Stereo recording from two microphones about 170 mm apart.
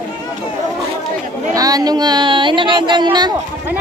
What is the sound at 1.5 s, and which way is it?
Speech, 20° right (ahead or behind).